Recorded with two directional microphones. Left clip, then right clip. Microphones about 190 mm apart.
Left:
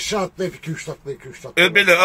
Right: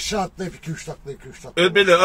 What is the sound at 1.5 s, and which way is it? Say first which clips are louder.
Speech: left 1 dB; 5° right (ahead or behind).